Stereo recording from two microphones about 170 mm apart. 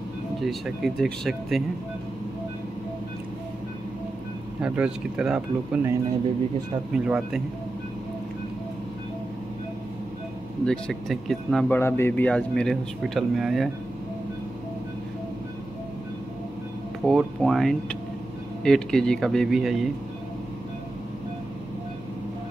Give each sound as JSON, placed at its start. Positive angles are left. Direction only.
{"t": 0.4, "sound": "speech", "side_deg": 0}
{"t": 4.6, "sound": "speech", "side_deg": -5}
{"t": 6.9, "sound": "speech", "side_deg": -5}
{"t": 10.6, "sound": "speech", "side_deg": 0}
{"t": 11.8, "sound": "speech", "side_deg": 10}
{"t": 17.0, "sound": "speech", "side_deg": 0}